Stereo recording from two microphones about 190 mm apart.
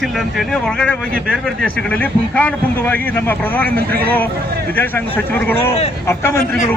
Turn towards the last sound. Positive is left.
turn(degrees=15)  # may be behind; listen again after turning